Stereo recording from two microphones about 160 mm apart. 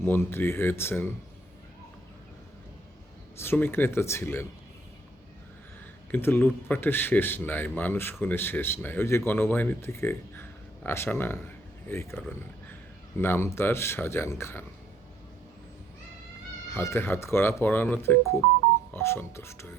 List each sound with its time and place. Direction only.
0.0 s speech: 15° left (ahead or behind)
3.3 s speech: 15° left (ahead or behind)
6.1 s speech: 15° left (ahead or behind)
16.7 s speech: 15° left (ahead or behind)